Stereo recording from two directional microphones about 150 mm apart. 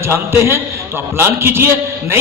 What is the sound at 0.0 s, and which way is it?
A man's voice, 15° right (ahead or behind).